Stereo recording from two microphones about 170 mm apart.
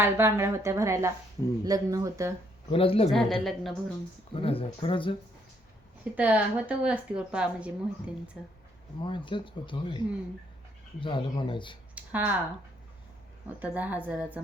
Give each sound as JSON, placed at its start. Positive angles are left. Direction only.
{"t": 0.0, "sound": "speech", "side_deg": -15}
{"t": 2.6, "sound": "speech", "side_deg": 35}
{"t": 3.1, "sound": "speech", "side_deg": 0}
{"t": 4.4, "sound": "speech", "side_deg": 30}
{"t": 6.1, "sound": "speech", "side_deg": -10}
{"t": 9.0, "sound": "speech", "side_deg": 30}
{"t": 11.0, "sound": "speech", "side_deg": 30}
{"t": 11.9, "sound": "speech", "side_deg": -10}
{"t": 13.6, "sound": "speech", "side_deg": -10}